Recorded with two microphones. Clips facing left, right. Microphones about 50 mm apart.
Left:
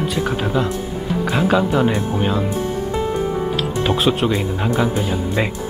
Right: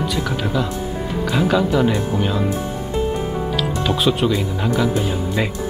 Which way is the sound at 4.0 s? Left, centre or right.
Left.